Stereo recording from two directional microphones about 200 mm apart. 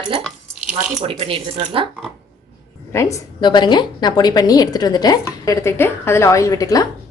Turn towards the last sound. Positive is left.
turn(degrees=15)  # may be behind; listen again after turning